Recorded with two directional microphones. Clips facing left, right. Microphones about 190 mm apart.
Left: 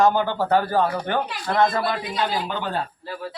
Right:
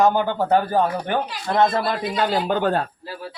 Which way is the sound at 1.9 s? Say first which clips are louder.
Right 3 dB; 50° right (ahead or behind).